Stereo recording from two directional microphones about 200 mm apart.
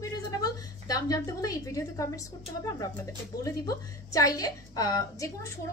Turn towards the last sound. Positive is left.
turn(degrees=15)  # may be behind; listen again after turning